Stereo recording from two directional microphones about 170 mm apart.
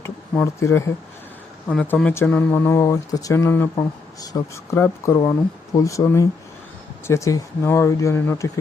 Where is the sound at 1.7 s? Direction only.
5° left (ahead or behind).